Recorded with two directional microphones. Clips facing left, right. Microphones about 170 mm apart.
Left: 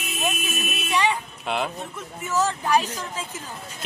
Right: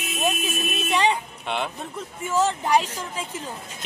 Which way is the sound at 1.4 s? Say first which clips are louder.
Left 2 dB; centre (ahead or behind).